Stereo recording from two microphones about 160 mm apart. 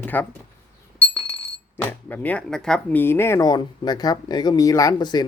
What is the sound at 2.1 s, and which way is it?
Speech, 10° left (ahead or behind).